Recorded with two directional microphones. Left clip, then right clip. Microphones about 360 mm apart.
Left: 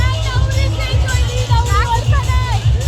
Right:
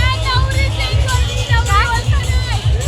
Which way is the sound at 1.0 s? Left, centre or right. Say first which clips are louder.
Right 1 dB; left.